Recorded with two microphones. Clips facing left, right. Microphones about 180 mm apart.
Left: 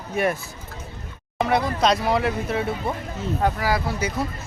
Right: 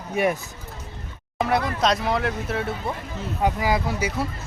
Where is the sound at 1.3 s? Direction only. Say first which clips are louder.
Left 1 dB; centre (ahead or behind).